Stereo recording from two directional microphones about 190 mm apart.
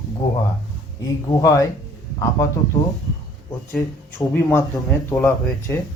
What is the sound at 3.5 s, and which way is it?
Speech, 10° left (ahead or behind).